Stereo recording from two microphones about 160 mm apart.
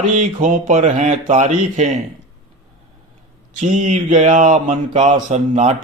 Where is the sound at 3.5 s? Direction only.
50° right (ahead or behind).